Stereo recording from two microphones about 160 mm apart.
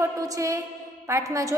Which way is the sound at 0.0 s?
20° right (ahead or behind).